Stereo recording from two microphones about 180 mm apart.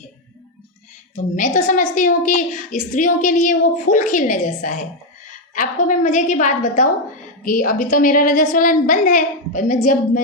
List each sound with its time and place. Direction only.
1.1 s a woman's voice: 45° left (ahead or behind)